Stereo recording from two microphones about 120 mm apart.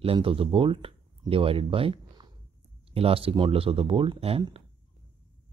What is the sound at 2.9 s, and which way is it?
Speech, 55° right (ahead or behind).